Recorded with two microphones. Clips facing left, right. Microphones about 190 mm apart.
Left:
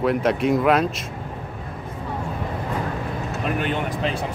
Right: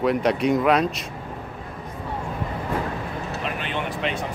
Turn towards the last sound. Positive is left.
turn(degrees=45)  # may be behind; listen again after turning